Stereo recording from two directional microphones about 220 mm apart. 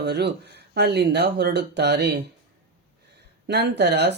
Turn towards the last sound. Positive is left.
turn(degrees=-50)  # may be behind; listen again after turning